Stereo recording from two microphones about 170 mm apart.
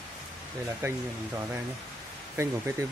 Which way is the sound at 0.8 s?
15° right (ahead or behind).